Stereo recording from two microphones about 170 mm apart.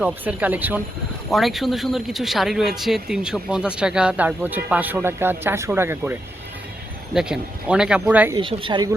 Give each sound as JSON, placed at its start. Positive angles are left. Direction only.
{"t": 0.0, "sound": "speech", "side_deg": -5}
{"t": 8.4, "sound": "speech", "side_deg": -30}